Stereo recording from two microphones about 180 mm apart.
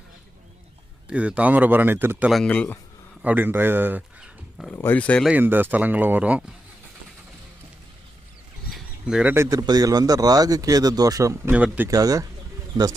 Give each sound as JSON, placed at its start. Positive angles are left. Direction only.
{"t": 1.0, "sound": "speech", "side_deg": -5}
{"t": 2.4, "sound": "speech", "side_deg": 5}
{"t": 3.2, "sound": "speech", "side_deg": -10}
{"t": 4.7, "sound": "speech", "side_deg": 10}
{"t": 5.3, "sound": "speech", "side_deg": -10}
{"t": 8.7, "sound": "speech", "side_deg": -5}
{"t": 11.9, "sound": "speech", "side_deg": -20}